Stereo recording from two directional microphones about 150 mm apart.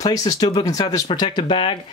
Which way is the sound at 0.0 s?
25° left (ahead or behind).